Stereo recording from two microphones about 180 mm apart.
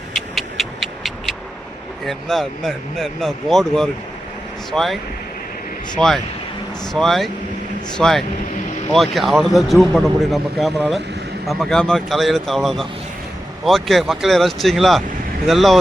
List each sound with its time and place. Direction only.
0.3 s a sound: centre (ahead or behind)
2.0 s a man's voice: centre (ahead or behind)
6.0 s a man's voice: 5° left (ahead or behind)